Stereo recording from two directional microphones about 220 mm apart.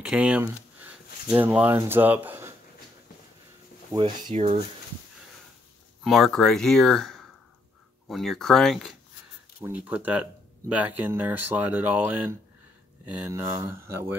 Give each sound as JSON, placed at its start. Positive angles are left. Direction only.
{"t": 0.0, "sound": "speech", "side_deg": -5}
{"t": 3.9, "sound": "speech", "side_deg": -20}
{"t": 6.0, "sound": "speech", "side_deg": 0}